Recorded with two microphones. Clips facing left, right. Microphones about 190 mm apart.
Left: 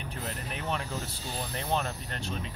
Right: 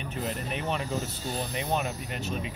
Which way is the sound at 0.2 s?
Centre (ahead or behind).